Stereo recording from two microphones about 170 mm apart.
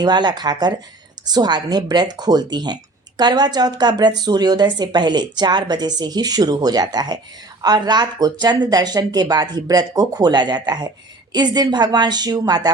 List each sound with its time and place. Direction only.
0.0 s a woman's voice: 25° right (ahead or behind)